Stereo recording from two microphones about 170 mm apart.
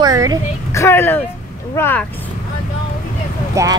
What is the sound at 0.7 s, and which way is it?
Speech, 15° left (ahead or behind).